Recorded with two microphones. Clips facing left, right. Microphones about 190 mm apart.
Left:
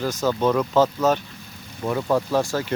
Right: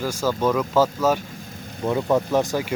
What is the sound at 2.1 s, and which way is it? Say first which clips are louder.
Speech: even; 20° right (ahead or behind).